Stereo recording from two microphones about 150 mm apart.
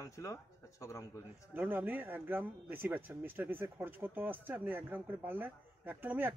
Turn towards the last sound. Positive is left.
turn(degrees=-15)  # may be behind; listen again after turning